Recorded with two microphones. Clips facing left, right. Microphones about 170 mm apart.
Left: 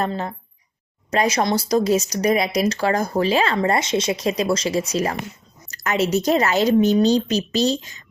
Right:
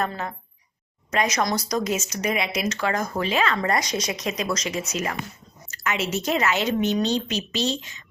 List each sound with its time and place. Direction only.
0.0 s speech: 30° left (ahead or behind)